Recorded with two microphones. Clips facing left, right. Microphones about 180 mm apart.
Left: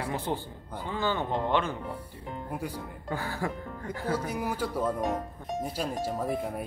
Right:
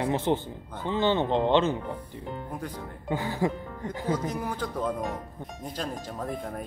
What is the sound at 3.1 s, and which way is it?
Speech, 20° right (ahead or behind).